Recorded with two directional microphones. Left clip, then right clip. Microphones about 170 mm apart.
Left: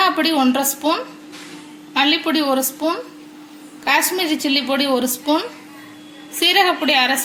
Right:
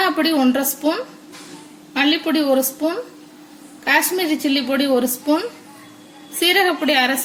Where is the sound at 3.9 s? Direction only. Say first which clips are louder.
Even; 40° right (ahead or behind).